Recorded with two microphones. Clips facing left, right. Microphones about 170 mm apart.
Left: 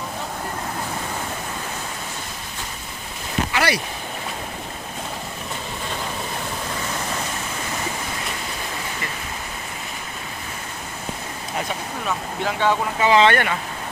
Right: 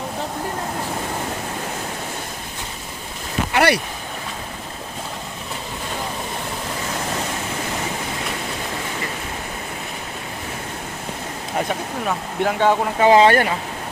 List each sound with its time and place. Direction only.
3.5 s boat: 60° right (ahead or behind)
12.5 s speech: 50° right (ahead or behind)